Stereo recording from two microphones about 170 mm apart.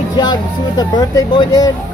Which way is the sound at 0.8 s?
25° left (ahead or behind).